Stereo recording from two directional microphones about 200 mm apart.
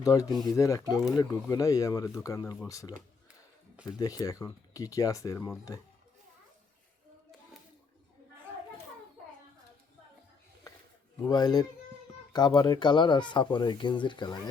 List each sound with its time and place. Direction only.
0.0 s speech: 15° left (ahead or behind)
0.3 s speech: centre (ahead or behind)
0.5 s speech: 15° left (ahead or behind)
3.9 s speech: 20° left (ahead or behind)
11.3 s speech: 20° left (ahead or behind)